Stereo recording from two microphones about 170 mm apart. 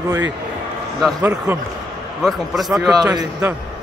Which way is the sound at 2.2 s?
Centre (ahead or behind).